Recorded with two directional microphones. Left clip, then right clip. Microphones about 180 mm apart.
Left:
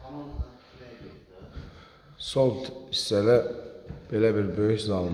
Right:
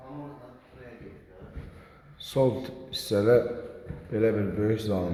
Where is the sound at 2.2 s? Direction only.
5° left (ahead or behind).